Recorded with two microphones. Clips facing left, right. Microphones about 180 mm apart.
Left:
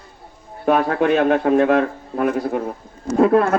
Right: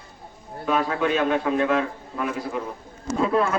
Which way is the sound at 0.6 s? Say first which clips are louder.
Left 6 dB; 55° left (ahead or behind).